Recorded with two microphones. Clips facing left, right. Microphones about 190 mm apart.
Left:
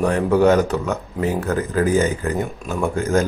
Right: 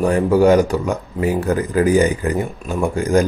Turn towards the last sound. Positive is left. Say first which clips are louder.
# right 3 dB
turn(degrees=-15)  # may be behind; listen again after turning